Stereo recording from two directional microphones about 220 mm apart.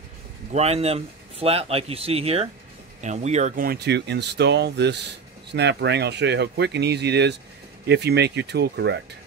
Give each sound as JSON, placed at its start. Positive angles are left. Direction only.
{"t": 0.5, "sound": "speech", "side_deg": -30}